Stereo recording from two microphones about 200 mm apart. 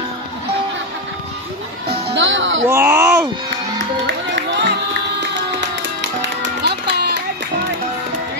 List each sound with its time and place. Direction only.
1.9 s music: 65° right (ahead or behind)
2.7 s a sound: 15° right (ahead or behind)
4.3 s music: 60° right (ahead or behind)
6.6 s run: 55° right (ahead or behind)